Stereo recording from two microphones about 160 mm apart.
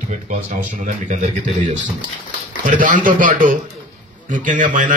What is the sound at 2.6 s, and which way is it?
A man's voice, 55° right (ahead or behind).